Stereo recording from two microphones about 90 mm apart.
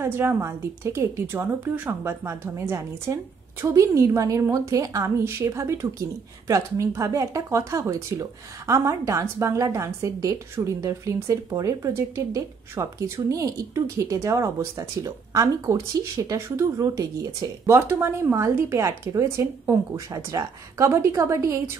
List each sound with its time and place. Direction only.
0.0 s a woman's voice: 25° right (ahead or behind)